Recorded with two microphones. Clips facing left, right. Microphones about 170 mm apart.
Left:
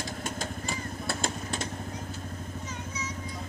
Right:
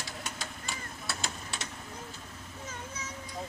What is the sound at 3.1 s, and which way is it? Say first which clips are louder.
Vehicle: left 5 dB; 45° left (ahead or behind).